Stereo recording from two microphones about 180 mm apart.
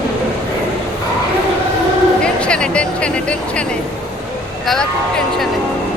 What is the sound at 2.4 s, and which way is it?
Speech, 5° left (ahead or behind).